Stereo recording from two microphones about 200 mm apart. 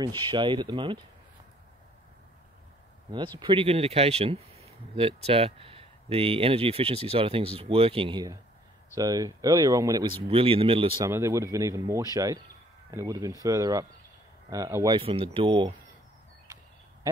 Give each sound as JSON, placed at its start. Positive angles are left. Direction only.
{"t": 0.0, "sound": "speech", "side_deg": -20}
{"t": 3.3, "sound": "speech", "side_deg": -25}
{"t": 10.2, "sound": "speech", "side_deg": -30}
{"t": 11.1, "sound": "speech", "side_deg": -15}
{"t": 15.0, "sound": "speech", "side_deg": -25}